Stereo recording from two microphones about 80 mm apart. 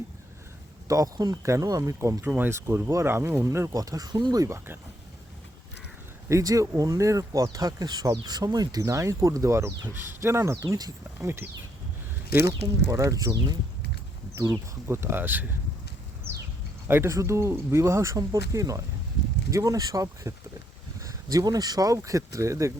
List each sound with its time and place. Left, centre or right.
0.9 s speech: right
1.4 s speech: right
2.2 s speech: right
3.8 s speech: right
4.4 s speech: right
6.2 s speech: right
8.8 s speech: right
11.2 s speech: right
12.9 s speech: right
16.9 s speech: right